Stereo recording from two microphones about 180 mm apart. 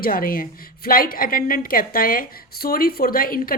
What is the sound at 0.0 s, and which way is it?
A woman's voice, 55° left (ahead or behind).